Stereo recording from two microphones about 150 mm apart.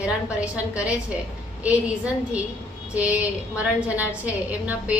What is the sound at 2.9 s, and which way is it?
A woman's voice, 10° right (ahead or behind).